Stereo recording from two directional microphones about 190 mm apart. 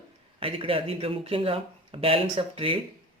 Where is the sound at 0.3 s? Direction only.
30° right (ahead or behind).